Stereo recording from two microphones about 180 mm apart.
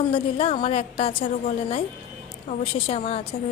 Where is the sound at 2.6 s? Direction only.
30° left (ahead or behind).